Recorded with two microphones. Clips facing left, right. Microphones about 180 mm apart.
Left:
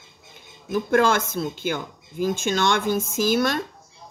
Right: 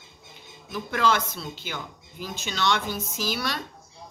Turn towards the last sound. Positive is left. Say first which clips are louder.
# left 9 dB
turn(degrees=50)  # may be behind; listen again after turning